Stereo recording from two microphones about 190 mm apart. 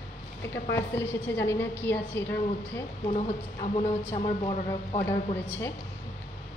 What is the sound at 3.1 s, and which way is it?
A woman's voice, 35° left (ahead or behind).